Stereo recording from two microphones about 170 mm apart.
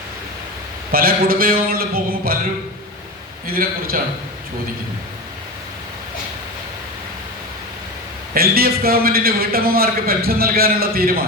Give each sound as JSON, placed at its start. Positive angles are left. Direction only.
{"t": 0.9, "sound": "a man's voice", "side_deg": -60}
{"t": 3.4, "sound": "a man's voice", "side_deg": -60}
{"t": 8.3, "sound": "a man's voice", "side_deg": -60}